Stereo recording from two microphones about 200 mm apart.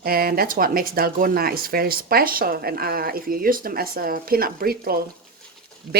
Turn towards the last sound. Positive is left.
turn(degrees=-55)  # may be behind; listen again after turning